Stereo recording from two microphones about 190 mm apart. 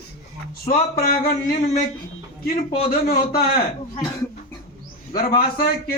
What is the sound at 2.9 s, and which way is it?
Speech, 50° left (ahead or behind).